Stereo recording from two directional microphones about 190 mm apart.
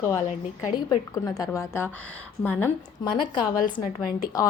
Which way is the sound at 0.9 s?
20° left (ahead or behind).